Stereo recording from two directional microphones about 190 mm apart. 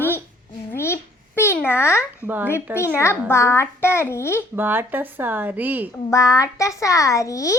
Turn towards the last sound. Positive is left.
turn(degrees=15)  # may be behind; listen again after turning